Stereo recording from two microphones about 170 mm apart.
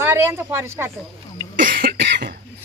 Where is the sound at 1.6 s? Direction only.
55° right (ahead or behind).